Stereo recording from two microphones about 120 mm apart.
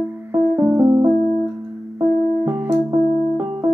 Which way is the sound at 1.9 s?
20° right (ahead or behind).